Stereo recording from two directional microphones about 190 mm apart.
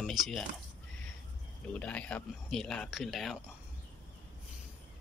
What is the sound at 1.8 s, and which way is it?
Speech, 5° left (ahead or behind).